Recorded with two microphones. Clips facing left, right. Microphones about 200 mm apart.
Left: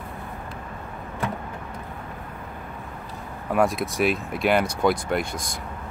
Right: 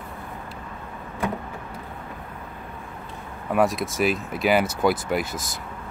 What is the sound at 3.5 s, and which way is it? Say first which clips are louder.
Speech: even; centre (ahead or behind).